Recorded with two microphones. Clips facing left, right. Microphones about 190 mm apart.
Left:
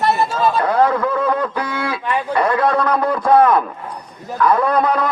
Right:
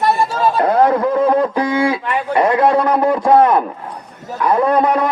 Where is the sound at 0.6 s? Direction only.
30° right (ahead or behind).